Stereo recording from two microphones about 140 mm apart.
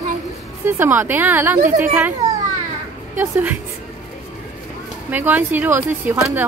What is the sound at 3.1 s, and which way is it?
Speech, 15° right (ahead or behind).